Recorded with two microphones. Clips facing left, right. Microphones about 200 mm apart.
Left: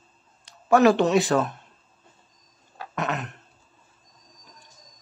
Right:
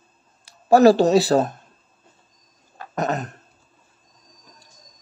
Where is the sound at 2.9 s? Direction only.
40° right (ahead or behind).